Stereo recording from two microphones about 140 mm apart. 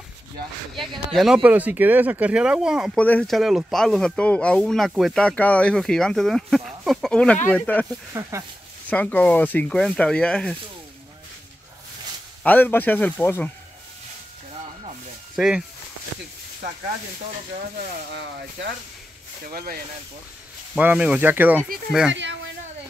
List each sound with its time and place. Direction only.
1.1 s speech: 5° right (ahead or behind)
3.0 s speech: 10° left (ahead or behind)
8.1 s speech: 20° right (ahead or behind)
8.8 s speech: 10° left (ahead or behind)
12.4 s speech: 15° left (ahead or behind)
15.3 s speech: 5° right (ahead or behind)
19.4 s speech: 90° right
20.7 s speech: 10° right (ahead or behind)
21.6 s speech: 90° right